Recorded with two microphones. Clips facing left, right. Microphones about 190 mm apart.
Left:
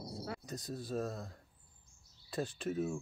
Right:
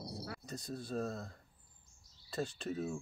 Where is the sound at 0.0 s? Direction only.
25° left (ahead or behind).